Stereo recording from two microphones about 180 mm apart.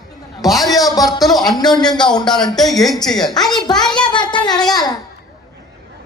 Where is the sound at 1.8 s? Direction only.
25° left (ahead or behind).